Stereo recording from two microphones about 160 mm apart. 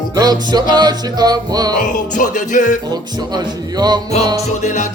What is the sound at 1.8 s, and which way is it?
Music, 50° left (ahead or behind).